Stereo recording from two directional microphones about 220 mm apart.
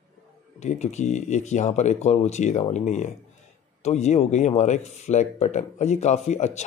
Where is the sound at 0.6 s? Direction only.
30° left (ahead or behind).